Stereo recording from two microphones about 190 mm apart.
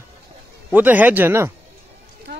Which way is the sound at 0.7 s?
10° right (ahead or behind).